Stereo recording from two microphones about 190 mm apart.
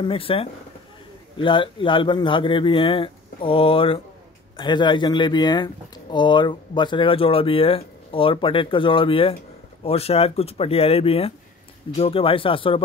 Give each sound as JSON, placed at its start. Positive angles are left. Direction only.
{"t": 0.0, "sound": "speech", "side_deg": 30}